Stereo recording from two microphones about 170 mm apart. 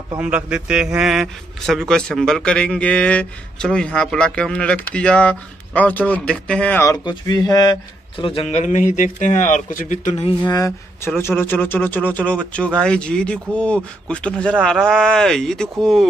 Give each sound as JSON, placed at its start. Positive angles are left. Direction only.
{"t": 0.2, "sound": "a man's voice", "side_deg": -5}
{"t": 6.8, "sound": "speech", "side_deg": 20}
{"t": 8.2, "sound": "a man's voice", "side_deg": 35}
{"t": 10.5, "sound": "a man's voice", "side_deg": 20}